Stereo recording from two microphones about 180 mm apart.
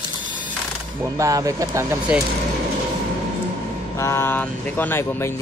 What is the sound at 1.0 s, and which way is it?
Speech, 20° right (ahead or behind).